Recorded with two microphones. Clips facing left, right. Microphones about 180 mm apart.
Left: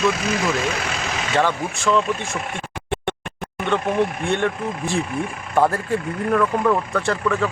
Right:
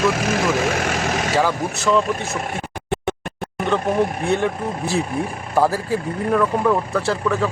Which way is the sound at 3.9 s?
35° right (ahead or behind).